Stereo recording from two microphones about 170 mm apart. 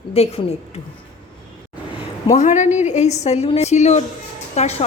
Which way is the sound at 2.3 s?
45° left (ahead or behind).